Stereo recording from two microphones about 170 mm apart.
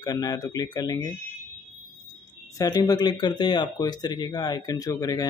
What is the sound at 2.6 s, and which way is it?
Speech, 20° left (ahead or behind).